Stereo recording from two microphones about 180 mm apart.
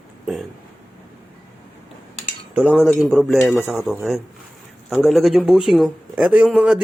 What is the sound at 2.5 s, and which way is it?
A man's voice, 5° right (ahead or behind).